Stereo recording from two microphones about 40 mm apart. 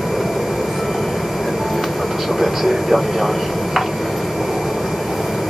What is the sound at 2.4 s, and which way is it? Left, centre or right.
Vehicle, centre.